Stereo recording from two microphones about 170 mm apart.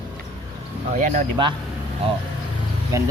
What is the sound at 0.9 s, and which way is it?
Speech, 45° right (ahead or behind).